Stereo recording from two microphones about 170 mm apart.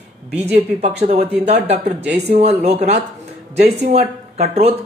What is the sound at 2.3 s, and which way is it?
Speech, 40° right (ahead or behind).